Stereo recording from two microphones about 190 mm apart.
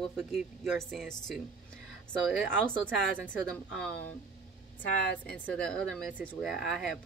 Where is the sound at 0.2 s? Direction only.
Centre (ahead or behind).